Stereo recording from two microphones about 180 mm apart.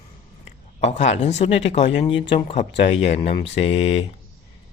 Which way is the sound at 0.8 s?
40° left (ahead or behind).